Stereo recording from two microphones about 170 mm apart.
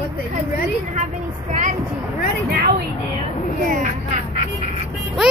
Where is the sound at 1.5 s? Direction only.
45° right (ahead or behind).